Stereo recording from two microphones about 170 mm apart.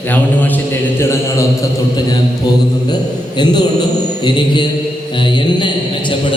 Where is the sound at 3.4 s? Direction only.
25° left (ahead or behind).